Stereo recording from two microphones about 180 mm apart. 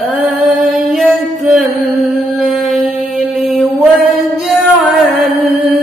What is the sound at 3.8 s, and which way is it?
Singing, 5° right (ahead or behind).